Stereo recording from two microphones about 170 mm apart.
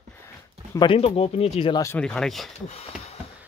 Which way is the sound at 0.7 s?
30° left (ahead or behind).